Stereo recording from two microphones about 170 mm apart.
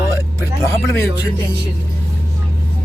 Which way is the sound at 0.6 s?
15° left (ahead or behind).